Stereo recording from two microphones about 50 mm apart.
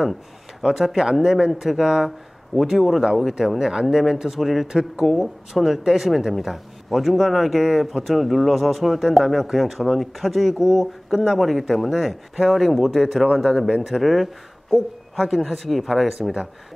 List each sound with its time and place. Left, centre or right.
0.6 s speech: centre
16.2 s a man's voice: centre